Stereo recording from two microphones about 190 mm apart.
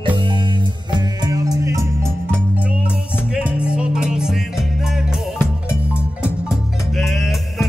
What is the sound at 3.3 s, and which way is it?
Music, 5° right (ahead or behind).